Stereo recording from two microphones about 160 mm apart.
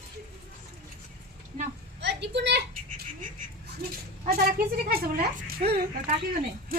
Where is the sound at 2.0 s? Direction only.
90° right.